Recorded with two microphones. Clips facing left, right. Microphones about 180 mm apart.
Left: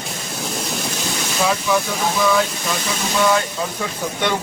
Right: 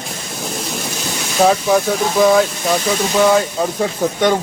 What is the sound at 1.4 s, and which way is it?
Speech, 40° right (ahead or behind).